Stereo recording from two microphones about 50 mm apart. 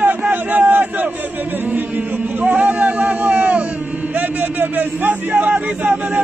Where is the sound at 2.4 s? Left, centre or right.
Right.